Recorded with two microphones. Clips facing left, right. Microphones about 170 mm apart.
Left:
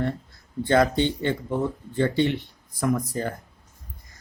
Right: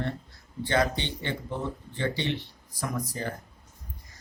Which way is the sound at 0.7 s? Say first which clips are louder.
Left 7 dB; 50° left (ahead or behind).